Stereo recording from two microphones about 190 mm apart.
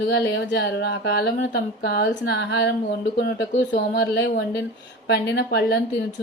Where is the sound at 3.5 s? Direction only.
45° left (ahead or behind).